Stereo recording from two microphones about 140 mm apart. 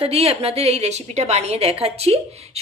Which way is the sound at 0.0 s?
45° right (ahead or behind).